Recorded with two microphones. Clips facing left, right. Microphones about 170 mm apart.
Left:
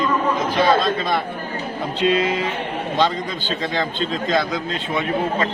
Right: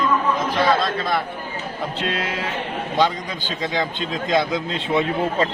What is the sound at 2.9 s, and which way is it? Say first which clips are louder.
A man's voice: even; 15° right (ahead or behind).